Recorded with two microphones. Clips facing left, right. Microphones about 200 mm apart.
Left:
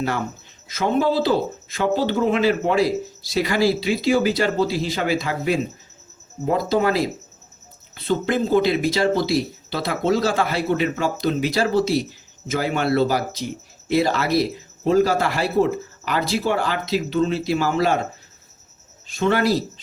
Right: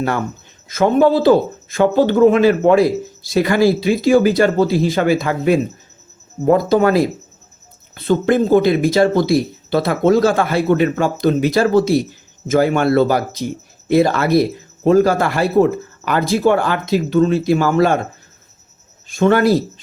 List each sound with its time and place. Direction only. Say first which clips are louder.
0.7 s speech: right 7 dB; 50° right (ahead or behind)
19.0 s speech: right 6 dB; 50° right (ahead or behind)